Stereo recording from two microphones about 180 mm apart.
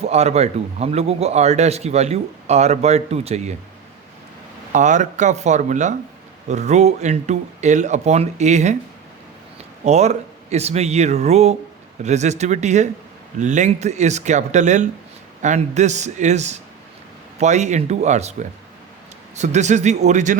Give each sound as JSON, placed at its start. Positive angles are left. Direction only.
{"t": 0.0, "sound": "a man's voice", "side_deg": -35}
{"t": 4.7, "sound": "a man's voice", "side_deg": -45}
{"t": 9.8, "sound": "a man's voice", "side_deg": -40}
{"t": 19.4, "sound": "a man's voice", "side_deg": -40}